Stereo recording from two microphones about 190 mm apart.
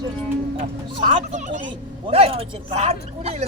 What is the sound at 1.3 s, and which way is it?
Speech, 40° right (ahead or behind).